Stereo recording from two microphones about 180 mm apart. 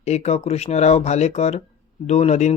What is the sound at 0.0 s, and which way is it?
Speech, 40° left (ahead or behind).